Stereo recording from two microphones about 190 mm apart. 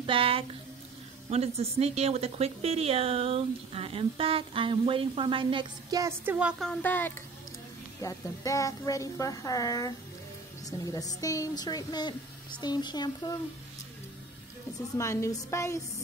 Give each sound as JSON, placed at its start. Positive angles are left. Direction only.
{"t": 0.0, "sound": "a woman's voice", "side_deg": -30}
{"t": 15.0, "sound": "a woman's voice", "side_deg": 15}